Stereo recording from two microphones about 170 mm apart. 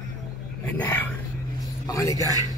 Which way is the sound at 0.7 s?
15° left (ahead or behind).